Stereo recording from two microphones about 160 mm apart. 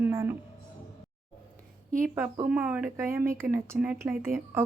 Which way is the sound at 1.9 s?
55° right (ahead or behind).